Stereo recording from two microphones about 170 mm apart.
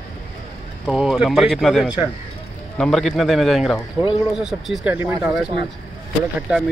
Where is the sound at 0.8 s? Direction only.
5° right (ahead or behind).